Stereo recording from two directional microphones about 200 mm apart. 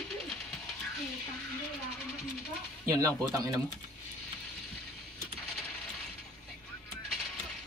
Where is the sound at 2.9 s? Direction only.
15° right (ahead or behind).